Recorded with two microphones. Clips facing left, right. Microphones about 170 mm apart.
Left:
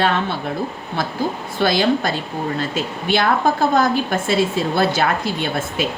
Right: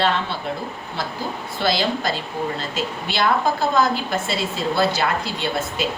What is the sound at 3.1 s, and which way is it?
Speech, 50° left (ahead or behind).